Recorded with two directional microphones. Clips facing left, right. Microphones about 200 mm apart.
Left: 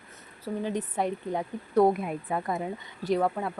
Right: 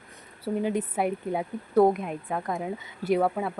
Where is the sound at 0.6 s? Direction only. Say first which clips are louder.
Right 2 dB; 10° right (ahead or behind).